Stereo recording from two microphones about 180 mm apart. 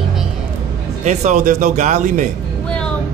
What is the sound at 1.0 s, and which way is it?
A man's voice, 40° right (ahead or behind).